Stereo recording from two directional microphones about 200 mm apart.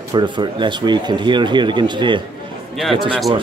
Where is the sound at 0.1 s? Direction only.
20° right (ahead or behind).